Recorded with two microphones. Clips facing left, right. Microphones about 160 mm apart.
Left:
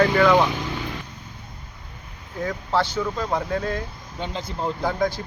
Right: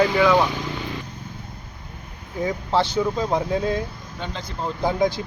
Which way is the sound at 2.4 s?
15° right (ahead or behind).